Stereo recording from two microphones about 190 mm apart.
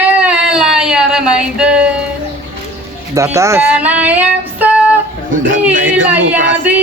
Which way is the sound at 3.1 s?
15° right (ahead or behind).